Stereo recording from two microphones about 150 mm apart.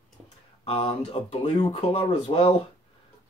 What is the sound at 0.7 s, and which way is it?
Speech, 40° left (ahead or behind).